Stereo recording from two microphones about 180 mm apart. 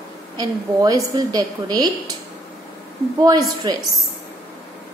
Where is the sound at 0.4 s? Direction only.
20° right (ahead or behind).